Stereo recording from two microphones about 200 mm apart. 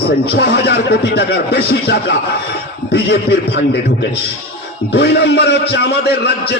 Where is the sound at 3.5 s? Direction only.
60° left (ahead or behind).